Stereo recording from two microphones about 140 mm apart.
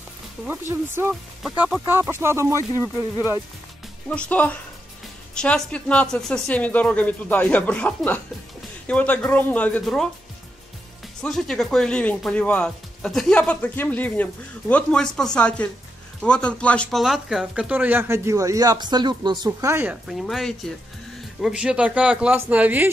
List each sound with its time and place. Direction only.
0.5 s speech: 15° right (ahead or behind)
4.3 s speech: 10° left (ahead or behind)
11.2 s speech: 5° left (ahead or behind)
17.0 s speech: centre (ahead or behind); by 19.7 s 30° right (ahead or behind)
19.7 s speech: 10° right (ahead or behind)